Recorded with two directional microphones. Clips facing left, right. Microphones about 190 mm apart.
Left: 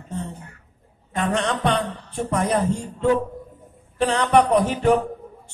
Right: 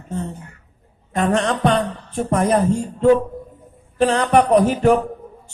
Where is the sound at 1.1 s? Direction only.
45° right (ahead or behind).